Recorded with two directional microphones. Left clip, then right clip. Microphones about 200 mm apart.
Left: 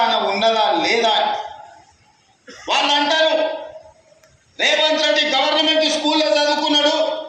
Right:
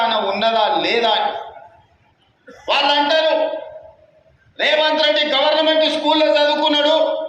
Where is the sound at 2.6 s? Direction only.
20° right (ahead or behind).